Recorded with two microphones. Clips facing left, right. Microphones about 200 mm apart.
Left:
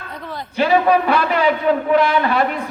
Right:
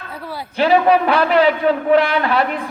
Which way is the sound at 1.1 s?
50° left (ahead or behind).